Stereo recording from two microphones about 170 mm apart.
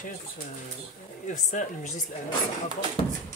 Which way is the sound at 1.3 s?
45° left (ahead or behind).